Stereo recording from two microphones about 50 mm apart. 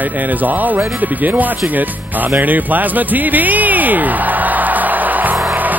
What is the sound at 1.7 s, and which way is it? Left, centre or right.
Music, right.